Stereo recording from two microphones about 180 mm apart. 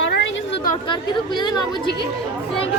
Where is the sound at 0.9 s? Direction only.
25° left (ahead or behind).